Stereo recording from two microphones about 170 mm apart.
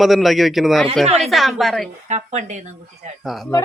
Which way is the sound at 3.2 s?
Centre (ahead or behind).